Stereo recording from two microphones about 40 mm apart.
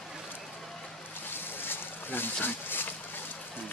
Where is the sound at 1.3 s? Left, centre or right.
Left.